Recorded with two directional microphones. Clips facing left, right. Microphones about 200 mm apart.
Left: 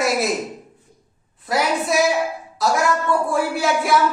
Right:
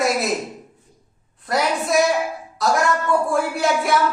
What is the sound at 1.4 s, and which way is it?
Speech, centre (ahead or behind).